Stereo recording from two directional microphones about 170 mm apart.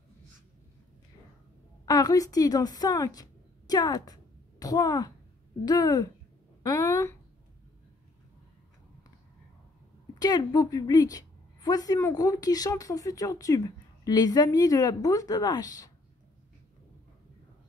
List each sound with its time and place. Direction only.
1.9 s a woman's voice: 20° left (ahead or behind)
10.1 s a woman's voice: 20° left (ahead or behind)